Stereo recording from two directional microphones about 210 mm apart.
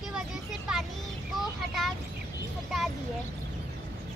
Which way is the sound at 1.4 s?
Centre (ahead or behind).